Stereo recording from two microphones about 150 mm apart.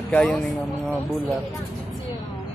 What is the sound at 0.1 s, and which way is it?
Speech, 5° left (ahead or behind).